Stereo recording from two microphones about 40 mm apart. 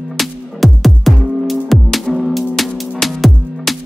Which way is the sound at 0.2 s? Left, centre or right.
Centre.